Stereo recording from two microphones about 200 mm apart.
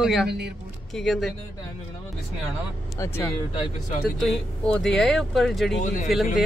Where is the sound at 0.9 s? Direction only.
Centre (ahead or behind).